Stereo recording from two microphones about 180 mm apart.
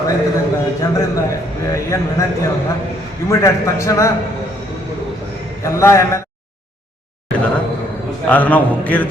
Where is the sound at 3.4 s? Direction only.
15° left (ahead or behind).